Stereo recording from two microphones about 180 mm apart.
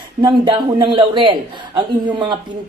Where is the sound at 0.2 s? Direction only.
25° right (ahead or behind).